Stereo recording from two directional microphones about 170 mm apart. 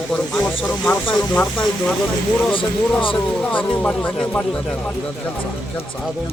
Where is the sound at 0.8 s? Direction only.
5° left (ahead or behind).